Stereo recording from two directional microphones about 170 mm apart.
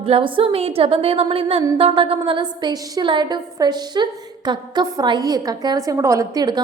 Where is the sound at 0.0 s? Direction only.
30° right (ahead or behind).